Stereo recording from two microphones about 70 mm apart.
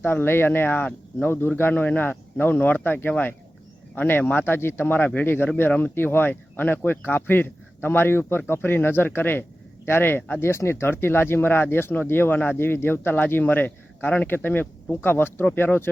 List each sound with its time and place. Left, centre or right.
0.0 s speech: left